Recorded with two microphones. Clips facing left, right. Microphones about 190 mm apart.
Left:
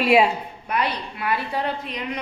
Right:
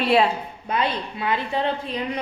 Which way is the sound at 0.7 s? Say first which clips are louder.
Right 1 dB; 25° right (ahead or behind).